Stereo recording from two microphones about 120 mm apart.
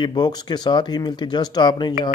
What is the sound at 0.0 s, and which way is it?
Speech, 35° left (ahead or behind).